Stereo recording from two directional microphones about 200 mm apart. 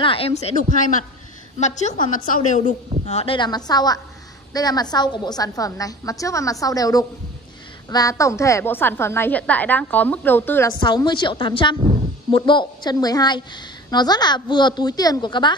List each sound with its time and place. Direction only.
0.0 s a woman's voice: 25° left (ahead or behind); by 10.7 s 10° left (ahead or behind)
10.8 s a woman's voice: 20° left (ahead or behind)